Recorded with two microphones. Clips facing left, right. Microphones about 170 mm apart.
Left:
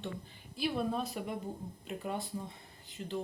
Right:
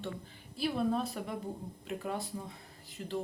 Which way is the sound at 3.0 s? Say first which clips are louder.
Even; 25° left (ahead or behind).